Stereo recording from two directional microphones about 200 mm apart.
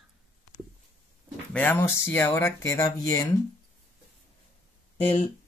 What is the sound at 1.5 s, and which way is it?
Speech, 10° left (ahead or behind).